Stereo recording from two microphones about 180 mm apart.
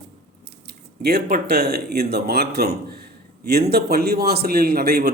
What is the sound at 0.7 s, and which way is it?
A man's voice, 65° right (ahead or behind).